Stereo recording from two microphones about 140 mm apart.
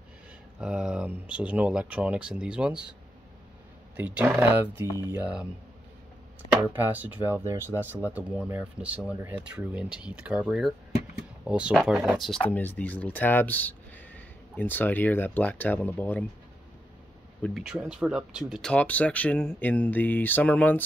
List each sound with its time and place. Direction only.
0.6 s speech: 5° right (ahead or behind)
3.9 s speech: 10° right (ahead or behind)
6.6 s speech: 15° right (ahead or behind)
12.4 s speech: 10° left (ahead or behind)
17.4 s speech: 10° left (ahead or behind)
17.7 s speech: 5° right (ahead or behind); by 20.8 s 10° left (ahead or behind)